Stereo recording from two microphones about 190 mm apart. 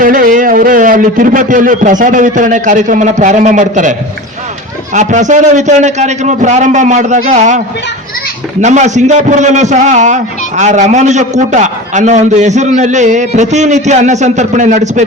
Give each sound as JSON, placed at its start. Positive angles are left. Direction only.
{"t": 0.0, "sound": "a man's voice", "side_deg": -45}
{"t": 4.9, "sound": "a man's voice", "side_deg": -40}
{"t": 8.6, "sound": "a man's voice", "side_deg": -40}